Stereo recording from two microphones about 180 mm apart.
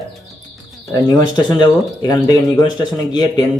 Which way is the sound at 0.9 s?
20° left (ahead or behind).